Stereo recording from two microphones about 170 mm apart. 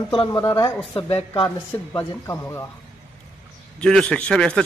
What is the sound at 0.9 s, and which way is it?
Speech, 30° left (ahead or behind).